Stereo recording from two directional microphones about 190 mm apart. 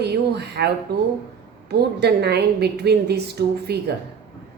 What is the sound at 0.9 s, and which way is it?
A woman's voice, 60° right (ahead or behind).